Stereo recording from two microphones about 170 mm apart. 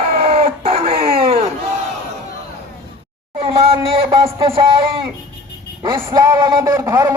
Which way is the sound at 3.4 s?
30° right (ahead or behind).